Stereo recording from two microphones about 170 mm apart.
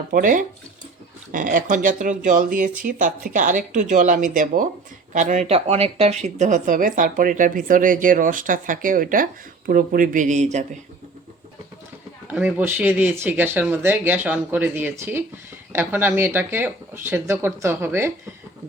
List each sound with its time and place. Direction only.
0.1 s speech: 50° right (ahead or behind)
6.4 s speech: 50° right (ahead or behind)
12.3 s speech: 10° right (ahead or behind)